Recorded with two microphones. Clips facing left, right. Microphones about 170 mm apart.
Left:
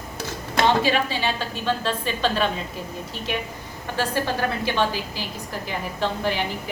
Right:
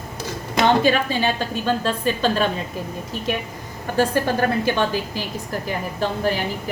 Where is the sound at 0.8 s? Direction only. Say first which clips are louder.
Right 4 dB; 50° right (ahead or behind).